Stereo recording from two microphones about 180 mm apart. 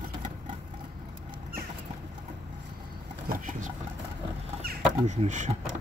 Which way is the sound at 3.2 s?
45° right (ahead or behind).